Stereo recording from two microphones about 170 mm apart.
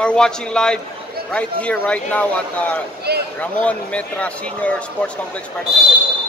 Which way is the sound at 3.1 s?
70° right (ahead or behind).